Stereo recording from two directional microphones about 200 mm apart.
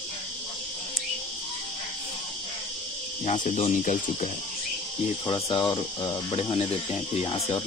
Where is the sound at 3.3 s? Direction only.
40° left (ahead or behind).